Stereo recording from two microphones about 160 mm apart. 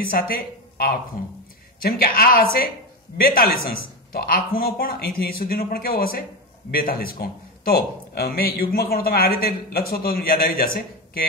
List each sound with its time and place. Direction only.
0.0 s a man's voice: 65° left (ahead or behind)